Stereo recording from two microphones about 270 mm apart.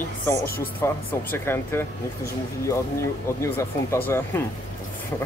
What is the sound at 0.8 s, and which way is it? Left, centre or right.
Speech, centre.